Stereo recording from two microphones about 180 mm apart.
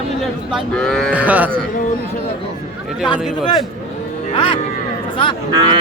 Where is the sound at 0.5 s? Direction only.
Centre (ahead or behind).